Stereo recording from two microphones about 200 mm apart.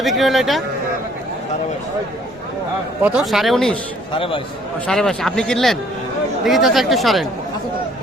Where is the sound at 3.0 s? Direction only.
5° right (ahead or behind).